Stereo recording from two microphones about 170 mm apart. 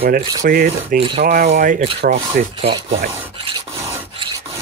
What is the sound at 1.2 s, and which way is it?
Speech, 55° right (ahead or behind).